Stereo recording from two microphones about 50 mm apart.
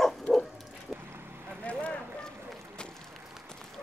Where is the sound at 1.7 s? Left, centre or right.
Left.